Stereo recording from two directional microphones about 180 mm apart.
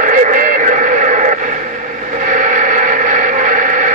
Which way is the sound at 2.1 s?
45° right (ahead or behind).